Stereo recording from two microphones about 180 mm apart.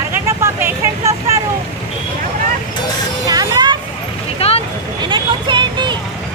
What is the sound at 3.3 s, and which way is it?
Vehicle, 20° right (ahead or behind).